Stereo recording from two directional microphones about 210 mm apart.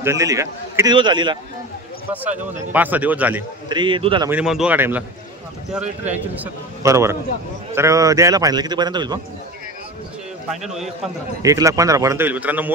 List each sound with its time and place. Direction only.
0.0 s a man's voice: 15° right (ahead or behind)
2.7 s a man's voice: 10° right (ahead or behind)
3.6 s a man's voice: 20° right (ahead or behind)
4.3 s a man's voice: 5° right (ahead or behind)
6.3 s a man's voice: 10° right (ahead or behind)
10.5 s a man's voice: centre (ahead or behind)
11.4 s a man's voice: 15° right (ahead or behind)